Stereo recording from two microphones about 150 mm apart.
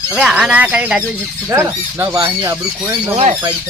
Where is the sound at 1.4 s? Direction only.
15° right (ahead or behind).